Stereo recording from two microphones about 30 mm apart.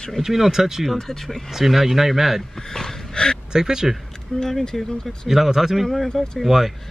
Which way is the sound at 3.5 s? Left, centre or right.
Right.